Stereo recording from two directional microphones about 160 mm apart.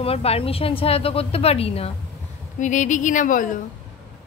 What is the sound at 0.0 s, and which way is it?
A woman's voice, 40° left (ahead or behind).